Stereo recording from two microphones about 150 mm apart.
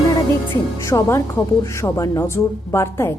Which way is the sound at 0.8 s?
20° left (ahead or behind).